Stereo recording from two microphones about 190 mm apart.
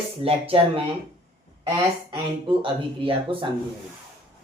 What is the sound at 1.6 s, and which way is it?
Speech, 25° right (ahead or behind).